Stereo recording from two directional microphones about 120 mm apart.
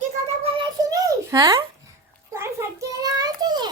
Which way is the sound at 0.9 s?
30° right (ahead or behind).